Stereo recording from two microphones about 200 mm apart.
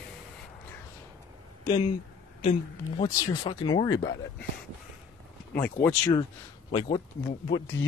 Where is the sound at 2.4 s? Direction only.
25° left (ahead or behind).